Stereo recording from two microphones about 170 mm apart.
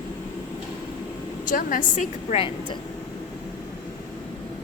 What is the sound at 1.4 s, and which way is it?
A woman's voice, 50° left (ahead or behind).